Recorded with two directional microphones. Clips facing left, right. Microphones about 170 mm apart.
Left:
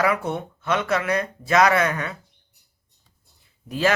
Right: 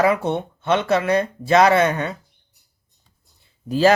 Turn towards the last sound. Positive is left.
turn(degrees=-30)  # may be behind; listen again after turning